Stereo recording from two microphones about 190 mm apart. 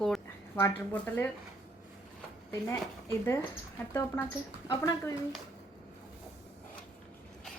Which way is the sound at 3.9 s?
15° left (ahead or behind).